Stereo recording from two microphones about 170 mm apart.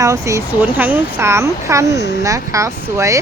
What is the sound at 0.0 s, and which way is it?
Speech, 20° right (ahead or behind).